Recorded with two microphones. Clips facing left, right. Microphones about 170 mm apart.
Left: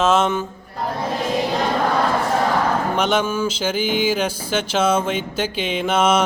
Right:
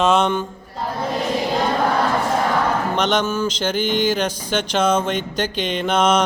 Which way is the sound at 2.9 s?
5° left (ahead or behind).